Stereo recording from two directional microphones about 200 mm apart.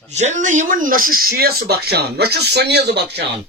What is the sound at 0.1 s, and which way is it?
Speech, 35° right (ahead or behind).